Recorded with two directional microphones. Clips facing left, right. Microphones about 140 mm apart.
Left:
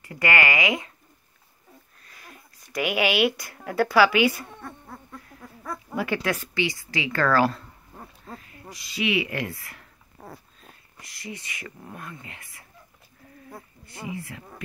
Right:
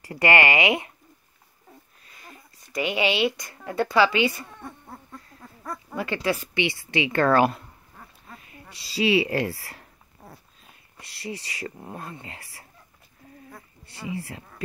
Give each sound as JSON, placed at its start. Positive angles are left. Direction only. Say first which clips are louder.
{"t": 0.0, "sound": "speech", "louder": "right 3 dB", "side_deg": -30}
{"t": 2.1, "sound": "speech", "louder": "right 1 dB", "side_deg": 0}
{"t": 5.7, "sound": "speech", "louder": "left 2 dB", "side_deg": 5}
{"t": 6.4, "sound": "speech", "louder": "right 1 dB", "side_deg": -25}
{"t": 7.9, "sound": "dog", "louder": "left 6 dB", "side_deg": 30}
{"t": 8.5, "sound": "a woman's voice", "louder": "left 3 dB", "side_deg": -30}
{"t": 11.0, "sound": "speech", "louder": "right 4 dB", "side_deg": -30}
{"t": 14.1, "sound": "speech", "louder": "right 3 dB", "side_deg": -30}